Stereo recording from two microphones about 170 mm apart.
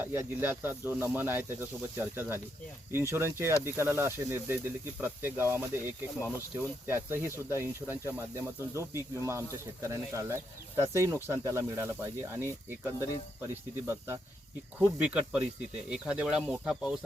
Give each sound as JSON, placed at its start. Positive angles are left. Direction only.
{"t": 0.0, "sound": "speech", "side_deg": -10}
{"t": 6.1, "sound": "speech", "side_deg": 15}
{"t": 6.8, "sound": "speech", "side_deg": -15}